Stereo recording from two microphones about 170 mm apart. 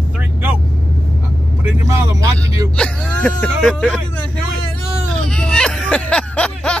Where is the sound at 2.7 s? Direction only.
5° left (ahead or behind).